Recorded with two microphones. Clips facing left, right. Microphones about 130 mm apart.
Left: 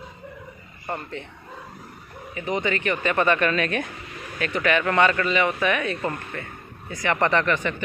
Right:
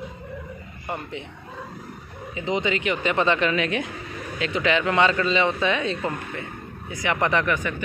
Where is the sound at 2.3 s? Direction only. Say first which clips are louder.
Right 1 dB; 20° right (ahead or behind).